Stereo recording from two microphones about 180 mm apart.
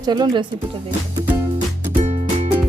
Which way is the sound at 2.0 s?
35° right (ahead or behind).